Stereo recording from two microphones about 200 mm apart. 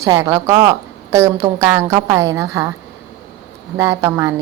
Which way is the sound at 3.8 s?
15° right (ahead or behind).